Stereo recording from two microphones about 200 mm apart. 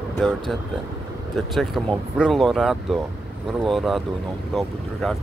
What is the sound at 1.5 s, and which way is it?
Speech, centre (ahead or behind).